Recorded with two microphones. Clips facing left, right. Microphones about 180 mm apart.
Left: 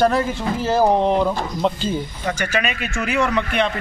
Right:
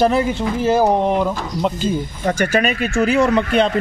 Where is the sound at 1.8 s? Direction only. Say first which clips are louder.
Right 3 dB; 45° right (ahead or behind).